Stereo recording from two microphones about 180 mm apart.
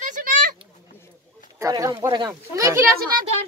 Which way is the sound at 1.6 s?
20° right (ahead or behind).